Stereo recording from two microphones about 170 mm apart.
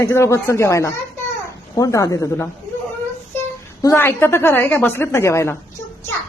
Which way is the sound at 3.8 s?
15° left (ahead or behind).